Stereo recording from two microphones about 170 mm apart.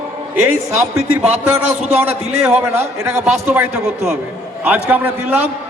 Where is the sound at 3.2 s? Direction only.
40° right (ahead or behind).